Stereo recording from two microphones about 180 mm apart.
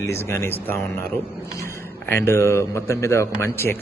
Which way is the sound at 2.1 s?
15° left (ahead or behind).